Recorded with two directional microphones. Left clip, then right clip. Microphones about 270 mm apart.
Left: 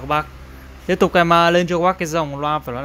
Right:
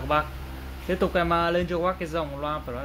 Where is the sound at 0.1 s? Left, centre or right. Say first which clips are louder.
Left 4 dB; left.